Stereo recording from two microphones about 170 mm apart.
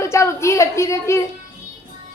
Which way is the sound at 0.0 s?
15° left (ahead or behind).